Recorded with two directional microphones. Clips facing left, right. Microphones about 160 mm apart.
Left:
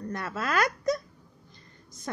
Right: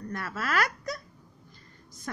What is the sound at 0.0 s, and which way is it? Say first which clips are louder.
Speech: left 2 dB; 20° left (ahead or behind).